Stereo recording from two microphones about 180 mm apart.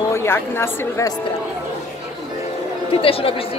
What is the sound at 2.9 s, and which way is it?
Speech, 30° left (ahead or behind).